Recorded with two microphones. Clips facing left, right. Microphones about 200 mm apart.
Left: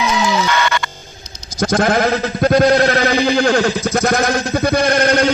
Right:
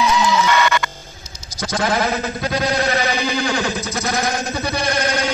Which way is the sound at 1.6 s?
50° left (ahead or behind).